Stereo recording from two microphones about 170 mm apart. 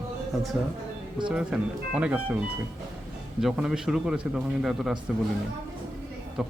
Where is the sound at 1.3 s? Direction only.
5° right (ahead or behind).